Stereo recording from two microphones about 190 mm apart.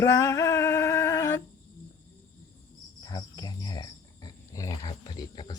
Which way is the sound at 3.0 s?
20° left (ahead or behind).